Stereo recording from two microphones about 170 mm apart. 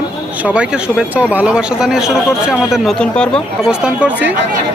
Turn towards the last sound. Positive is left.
turn(degrees=-10)  # may be behind; listen again after turning